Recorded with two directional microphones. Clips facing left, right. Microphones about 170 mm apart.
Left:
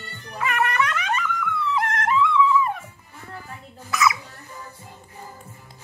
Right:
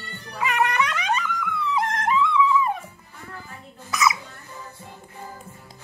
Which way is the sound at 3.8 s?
20° right (ahead or behind).